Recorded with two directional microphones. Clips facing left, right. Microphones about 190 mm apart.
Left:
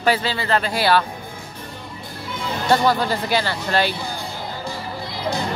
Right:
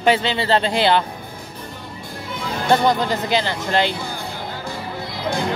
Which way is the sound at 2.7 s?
20° right (ahead or behind).